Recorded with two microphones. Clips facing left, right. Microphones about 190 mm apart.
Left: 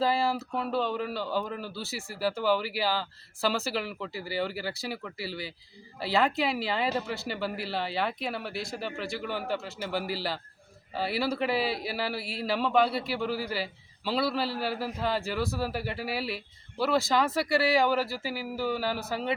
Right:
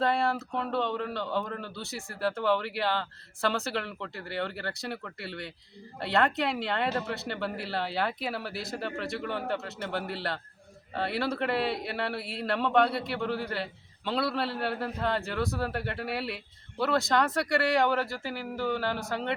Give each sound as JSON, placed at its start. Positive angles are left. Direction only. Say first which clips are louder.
{"t": 0.0, "sound": "a man's voice", "louder": "even", "side_deg": 0}